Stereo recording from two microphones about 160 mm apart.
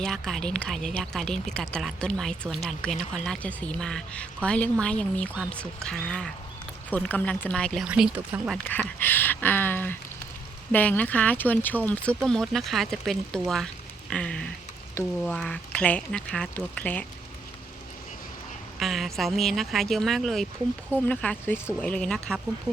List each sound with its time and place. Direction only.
0.0 s a woman's voice: centre (ahead or behind)
7.9 s speech: 5° right (ahead or behind)
8.5 s a woman's voice: 10° left (ahead or behind)
18.8 s a woman's voice: centre (ahead or behind)